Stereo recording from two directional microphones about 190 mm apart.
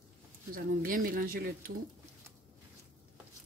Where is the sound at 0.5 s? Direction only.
50° right (ahead or behind).